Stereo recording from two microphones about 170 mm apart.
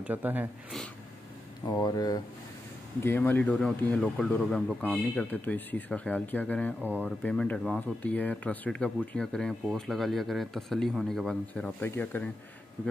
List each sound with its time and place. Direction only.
0.0 s speech: 10° right (ahead or behind)
1.7 s speech: 20° left (ahead or behind)